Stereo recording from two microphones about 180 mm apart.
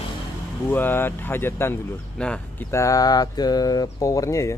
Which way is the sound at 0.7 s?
10° left (ahead or behind).